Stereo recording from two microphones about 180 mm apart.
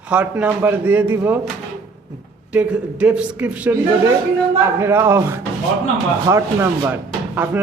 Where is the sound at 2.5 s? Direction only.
10° right (ahead or behind).